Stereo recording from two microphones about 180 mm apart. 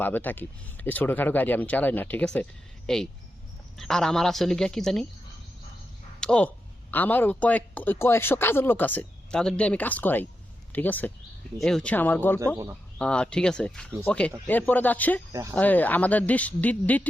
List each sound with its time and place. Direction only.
0.0 s a woman's voice: 10° left (ahead or behind)
6.1 s a woman's voice: 5° left (ahead or behind)
15.3 s speech: 20° right (ahead or behind)
15.5 s speech: 10° left (ahead or behind)